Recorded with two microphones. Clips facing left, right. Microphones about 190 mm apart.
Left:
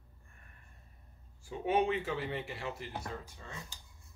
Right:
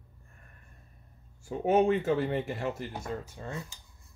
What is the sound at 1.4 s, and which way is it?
Speech, 45° right (ahead or behind).